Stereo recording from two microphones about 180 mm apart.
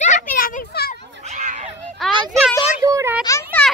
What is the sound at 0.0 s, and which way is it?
Children playing, 45° left (ahead or behind).